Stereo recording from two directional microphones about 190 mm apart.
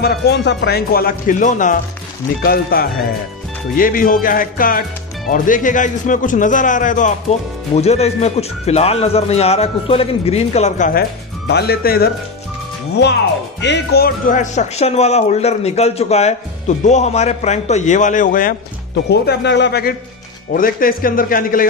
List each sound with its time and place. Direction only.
0.0 s speech: 60° left (ahead or behind); by 1.8 s 40° left (ahead or behind)
2.4 s a man's voice: 50° left (ahead or behind)
13.6 s a man's voice: 60° left (ahead or behind); by 18.5 s 45° left (ahead or behind)
19.0 s speech: 65° left (ahead or behind)
20.5 s speech: 50° left (ahead or behind)